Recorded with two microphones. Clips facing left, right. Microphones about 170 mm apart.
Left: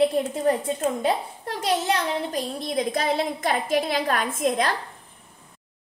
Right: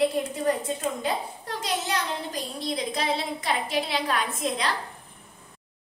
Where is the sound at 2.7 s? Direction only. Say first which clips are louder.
Left 5 dB; 50° left (ahead or behind).